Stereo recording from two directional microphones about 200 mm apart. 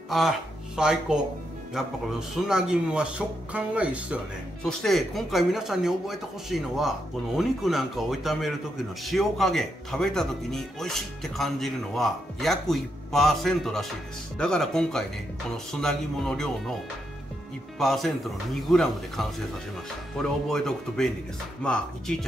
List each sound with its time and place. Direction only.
0.1 s a man's voice: centre (ahead or behind)
17.7 s a man's voice: centre (ahead or behind)